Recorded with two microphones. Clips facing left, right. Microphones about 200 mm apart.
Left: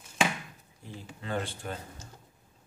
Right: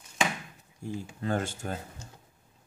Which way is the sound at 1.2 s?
45° right (ahead or behind).